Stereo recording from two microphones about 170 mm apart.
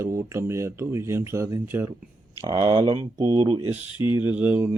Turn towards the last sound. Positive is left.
turn(degrees=-10)  # may be behind; listen again after turning